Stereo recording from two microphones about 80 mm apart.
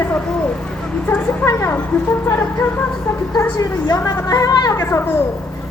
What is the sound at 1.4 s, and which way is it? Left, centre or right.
Speech, left.